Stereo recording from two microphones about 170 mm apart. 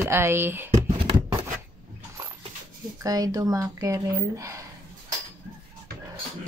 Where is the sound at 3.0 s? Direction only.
20° right (ahead or behind).